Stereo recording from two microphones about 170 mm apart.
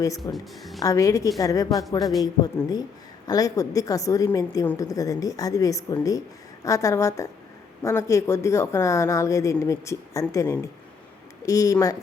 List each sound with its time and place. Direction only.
0.3 s a woman's voice: 15° left (ahead or behind)
4.6 s speech: 10° left (ahead or behind)
4.9 s a woman's voice: 20° left (ahead or behind)